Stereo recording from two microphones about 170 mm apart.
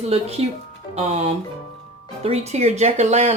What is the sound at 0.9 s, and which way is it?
Speech, 40° right (ahead or behind).